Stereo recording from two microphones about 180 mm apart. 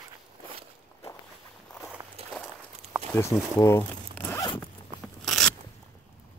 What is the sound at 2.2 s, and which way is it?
Walk, 35° right (ahead or behind).